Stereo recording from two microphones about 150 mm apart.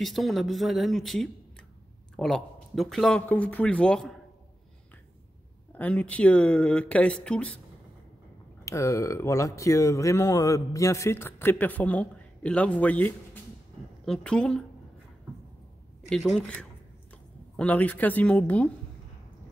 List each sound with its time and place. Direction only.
0.0 s speech: centre (ahead or behind)
5.8 s speech: 10° left (ahead or behind)
8.6 s speech: 20° left (ahead or behind); by 14.6 s 5° left (ahead or behind)
16.1 s speech: centre (ahead or behind)
17.6 s speech: 10° left (ahead or behind)